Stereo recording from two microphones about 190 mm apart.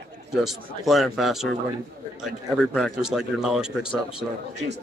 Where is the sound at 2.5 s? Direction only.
Centre (ahead or behind).